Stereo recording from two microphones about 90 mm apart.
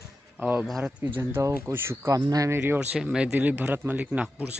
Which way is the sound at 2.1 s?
40° right (ahead or behind).